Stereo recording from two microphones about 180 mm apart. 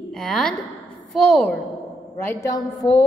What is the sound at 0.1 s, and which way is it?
A woman's voice, 5° left (ahead or behind).